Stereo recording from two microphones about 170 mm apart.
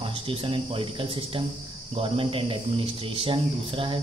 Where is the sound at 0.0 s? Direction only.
30° right (ahead or behind).